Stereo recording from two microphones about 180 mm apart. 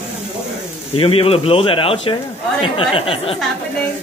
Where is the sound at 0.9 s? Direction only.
30° left (ahead or behind).